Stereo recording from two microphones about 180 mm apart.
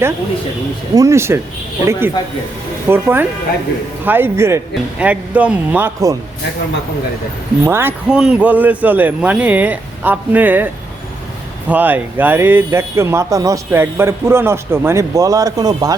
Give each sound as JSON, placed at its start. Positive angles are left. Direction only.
{"t": 0.9, "sound": "speech", "side_deg": -15}
{"t": 7.6, "sound": "speech", "side_deg": -15}
{"t": 11.7, "sound": "speech", "side_deg": -10}